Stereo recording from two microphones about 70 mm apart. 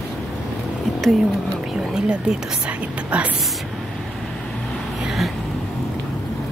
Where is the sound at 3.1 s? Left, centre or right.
Centre.